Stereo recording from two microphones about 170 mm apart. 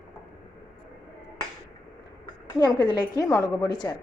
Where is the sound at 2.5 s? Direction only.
25° left (ahead or behind).